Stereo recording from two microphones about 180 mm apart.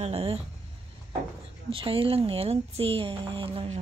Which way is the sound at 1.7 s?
30° right (ahead or behind).